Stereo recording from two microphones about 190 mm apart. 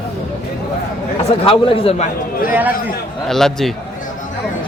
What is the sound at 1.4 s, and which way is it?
Speech, 30° left (ahead or behind).